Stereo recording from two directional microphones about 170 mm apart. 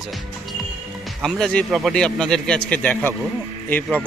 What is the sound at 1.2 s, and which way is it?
A man's voice, 5° left (ahead or behind).